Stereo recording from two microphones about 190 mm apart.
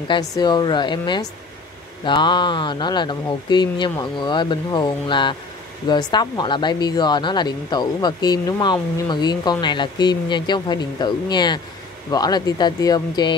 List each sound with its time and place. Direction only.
0.1 s speech: 20° left (ahead or behind)